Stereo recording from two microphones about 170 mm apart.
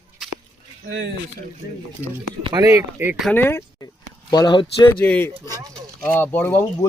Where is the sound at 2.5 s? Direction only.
20° right (ahead or behind).